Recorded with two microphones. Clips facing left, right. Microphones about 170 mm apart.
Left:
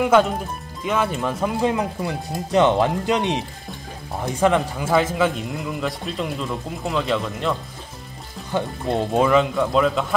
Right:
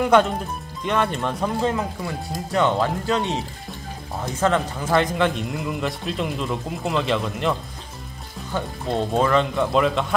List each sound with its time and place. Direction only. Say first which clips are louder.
0.0 s speech: left 1 dB; 5° left (ahead or behind)
8.5 s speech: left 2 dB; 10° left (ahead or behind)